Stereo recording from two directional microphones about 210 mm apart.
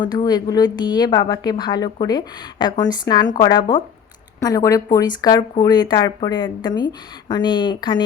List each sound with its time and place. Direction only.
0.0 s a woman's voice: 20° left (ahead or behind)